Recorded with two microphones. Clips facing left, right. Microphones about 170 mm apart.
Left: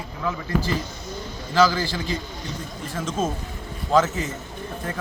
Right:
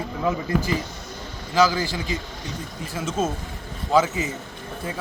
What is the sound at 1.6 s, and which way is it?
A man's voice, 10° right (ahead or behind).